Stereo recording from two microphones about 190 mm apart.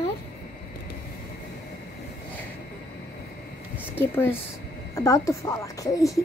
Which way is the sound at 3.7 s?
10° left (ahead or behind).